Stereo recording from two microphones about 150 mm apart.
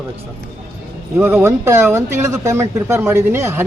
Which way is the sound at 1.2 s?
15° right (ahead or behind).